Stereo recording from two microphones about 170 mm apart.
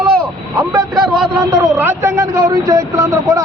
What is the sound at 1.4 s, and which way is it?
A man's voice, 20° right (ahead or behind).